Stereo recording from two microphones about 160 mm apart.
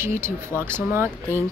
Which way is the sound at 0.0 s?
15° right (ahead or behind).